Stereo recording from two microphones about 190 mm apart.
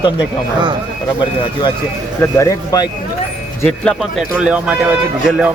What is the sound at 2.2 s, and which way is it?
Speech, 15° left (ahead or behind).